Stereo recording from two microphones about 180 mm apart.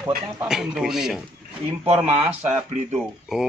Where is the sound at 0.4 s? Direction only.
5° right (ahead or behind).